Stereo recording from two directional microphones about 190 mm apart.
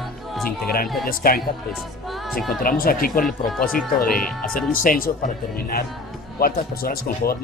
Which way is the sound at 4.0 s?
50° left (ahead or behind).